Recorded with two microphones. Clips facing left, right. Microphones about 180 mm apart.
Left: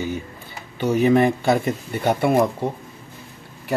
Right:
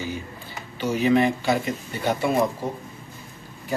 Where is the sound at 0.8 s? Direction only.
55° left (ahead or behind).